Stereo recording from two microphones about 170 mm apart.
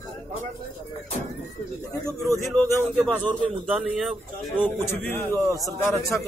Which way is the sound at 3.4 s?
5° right (ahead or behind).